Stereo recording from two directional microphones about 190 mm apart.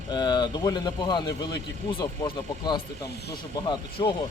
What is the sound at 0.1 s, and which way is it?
Speech, 25° left (ahead or behind).